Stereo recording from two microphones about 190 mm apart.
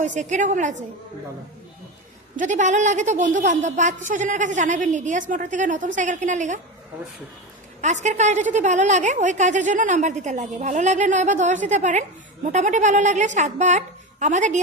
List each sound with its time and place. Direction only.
0.0 s a woman's voice: 40° right (ahead or behind)
2.3 s a woman's voice: 40° right (ahead or behind)
7.8 s a woman's voice: 40° right (ahead or behind)